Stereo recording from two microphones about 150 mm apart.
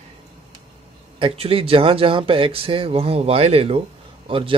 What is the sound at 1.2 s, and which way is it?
A man's voice, 40° right (ahead or behind).